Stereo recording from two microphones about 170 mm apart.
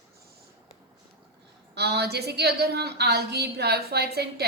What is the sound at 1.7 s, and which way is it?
A woman's voice, 75° right (ahead or behind).